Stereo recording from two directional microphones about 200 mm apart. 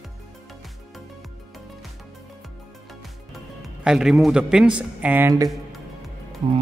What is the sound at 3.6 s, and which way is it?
A man's voice, 5° right (ahead or behind).